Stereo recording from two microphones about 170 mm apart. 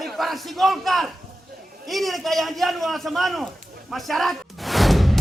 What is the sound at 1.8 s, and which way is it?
A man's voice, centre (ahead or behind).